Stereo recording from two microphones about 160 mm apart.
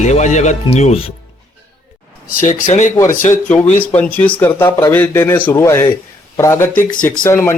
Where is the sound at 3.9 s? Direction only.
10° left (ahead or behind).